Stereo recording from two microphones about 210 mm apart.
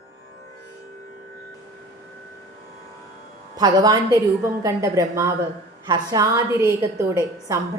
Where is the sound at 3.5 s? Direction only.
20° right (ahead or behind).